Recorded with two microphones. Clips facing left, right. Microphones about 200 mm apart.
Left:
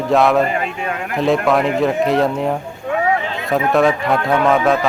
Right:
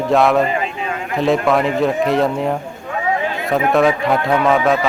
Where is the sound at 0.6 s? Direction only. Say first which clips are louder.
Even; 55° left (ahead or behind).